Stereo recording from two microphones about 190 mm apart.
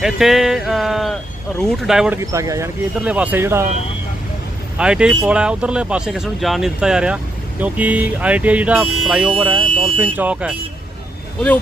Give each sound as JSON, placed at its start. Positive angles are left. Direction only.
{"t": 0.0, "sound": "speech", "side_deg": 0}
{"t": 2.3, "sound": "speech", "side_deg": -15}
{"t": 2.9, "sound": "speech", "side_deg": -5}
{"t": 4.8, "sound": "speech", "side_deg": -5}
{"t": 9.5, "sound": "a sound", "side_deg": -25}
{"t": 10.0, "sound": "speech", "side_deg": -10}